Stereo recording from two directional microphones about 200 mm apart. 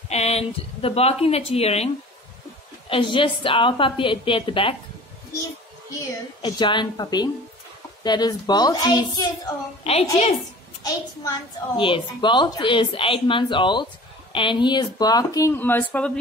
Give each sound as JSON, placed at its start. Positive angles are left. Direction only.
{"t": 0.1, "sound": "a woman's voice", "side_deg": 30}
{"t": 2.9, "sound": "a child's voice", "side_deg": 25}
{"t": 6.4, "sound": "a child's voice", "side_deg": 25}
{"t": 9.8, "sound": "a woman's voice", "side_deg": 30}
{"t": 10.8, "sound": "a child's voice", "side_deg": 20}